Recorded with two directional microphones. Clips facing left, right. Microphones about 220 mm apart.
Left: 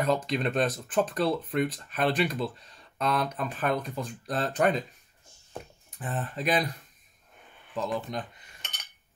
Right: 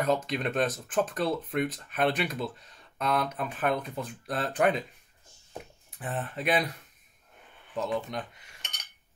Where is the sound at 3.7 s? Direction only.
5° right (ahead or behind).